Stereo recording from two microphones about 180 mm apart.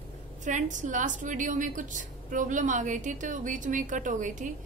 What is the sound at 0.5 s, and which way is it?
A woman's voice, 45° right (ahead or behind).